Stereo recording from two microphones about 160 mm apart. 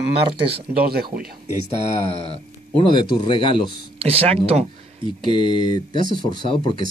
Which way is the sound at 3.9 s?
40° right (ahead or behind).